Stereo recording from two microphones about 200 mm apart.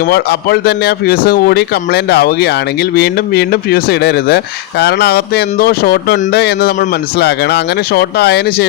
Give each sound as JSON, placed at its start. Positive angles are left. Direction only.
{"t": 0.0, "sound": "speech", "side_deg": 50}